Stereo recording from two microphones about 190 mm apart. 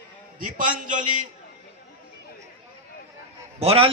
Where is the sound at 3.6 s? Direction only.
30° right (ahead or behind).